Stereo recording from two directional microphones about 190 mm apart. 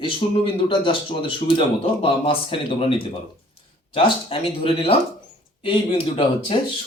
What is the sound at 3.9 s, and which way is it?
Speech, 30° left (ahead or behind).